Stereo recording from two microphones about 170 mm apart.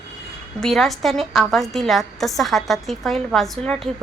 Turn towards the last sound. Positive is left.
turn(degrees=5)  # may be behind; listen again after turning